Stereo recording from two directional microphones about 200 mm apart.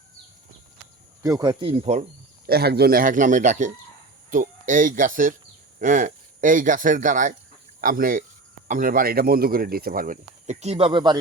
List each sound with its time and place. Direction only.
1.2 s speech: 20° right (ahead or behind)
2.5 s speech: 50° right (ahead or behind); by 11.2 s 25° right (ahead or behind)